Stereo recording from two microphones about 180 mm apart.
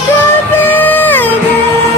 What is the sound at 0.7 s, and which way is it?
Music, 10° left (ahead or behind).